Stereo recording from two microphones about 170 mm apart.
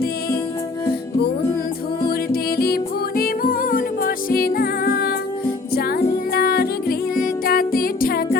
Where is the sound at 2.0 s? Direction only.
60° left (ahead or behind).